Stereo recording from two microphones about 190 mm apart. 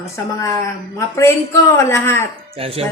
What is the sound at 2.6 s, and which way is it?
Speech, 30° right (ahead or behind).